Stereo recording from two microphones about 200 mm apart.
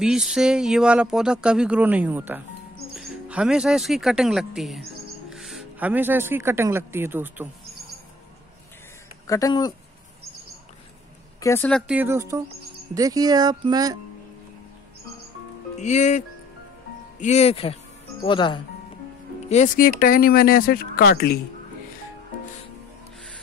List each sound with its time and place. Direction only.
0.0 s speech: 5° right (ahead or behind)
9.3 s speech: 20° left (ahead or behind)
11.4 s speech: 10° left (ahead or behind)
11.9 s speech: 10° right (ahead or behind)
15.8 s speech: 35° left (ahead or behind)
19.5 s speech: 40° left (ahead or behind)